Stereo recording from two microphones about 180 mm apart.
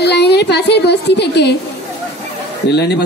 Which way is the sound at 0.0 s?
65° left (ahead or behind).